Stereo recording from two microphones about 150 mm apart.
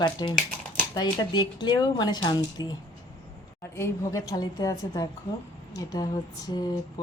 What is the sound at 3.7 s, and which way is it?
A woman's voice, 20° left (ahead or behind).